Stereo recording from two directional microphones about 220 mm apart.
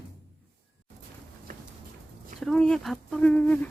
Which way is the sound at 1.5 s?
40° right (ahead or behind).